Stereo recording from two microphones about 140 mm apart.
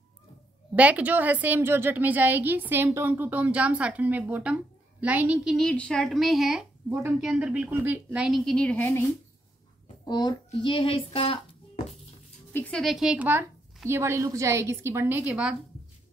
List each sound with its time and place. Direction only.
0.7 s a woman's voice: 10° right (ahead or behind)
5.7 s a woman's voice: 5° left (ahead or behind)
6.9 s a woman's voice: 15° right (ahead or behind)
7.2 s a woman's voice: 5° right (ahead or behind); by 9.0 s 10° left (ahead or behind)
10.0 s speech: 30° left (ahead or behind); by 11.9 s 45° left (ahead or behind)
12.5 s speech: 10° left (ahead or behind)
12.8 s a woman's voice: 5° right (ahead or behind)